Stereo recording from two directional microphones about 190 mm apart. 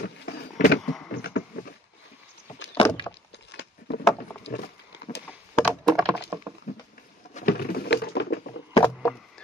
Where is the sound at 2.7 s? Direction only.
25° left (ahead or behind).